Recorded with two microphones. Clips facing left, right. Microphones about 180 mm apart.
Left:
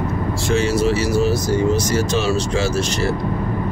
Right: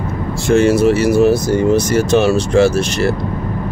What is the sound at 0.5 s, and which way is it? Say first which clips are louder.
Speech: right 7 dB; 55° right (ahead or behind).